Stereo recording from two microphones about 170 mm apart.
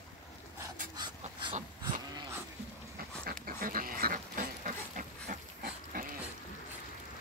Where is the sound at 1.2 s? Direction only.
35° right (ahead or behind).